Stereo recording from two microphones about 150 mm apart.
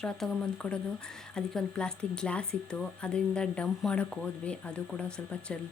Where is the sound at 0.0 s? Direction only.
5° left (ahead or behind).